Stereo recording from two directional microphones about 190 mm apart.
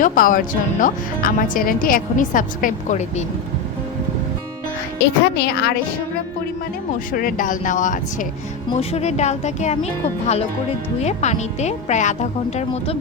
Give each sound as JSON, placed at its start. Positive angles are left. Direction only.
{"t": 0.0, "sound": "a woman's voice", "side_deg": 45}
{"t": 4.9, "sound": "speech", "side_deg": 60}
{"t": 7.1, "sound": "a woman's voice", "side_deg": 45}
{"t": 11.0, "sound": "speech", "side_deg": 35}